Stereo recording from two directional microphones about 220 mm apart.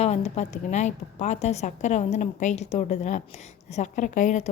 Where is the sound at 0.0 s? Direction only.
30° left (ahead or behind).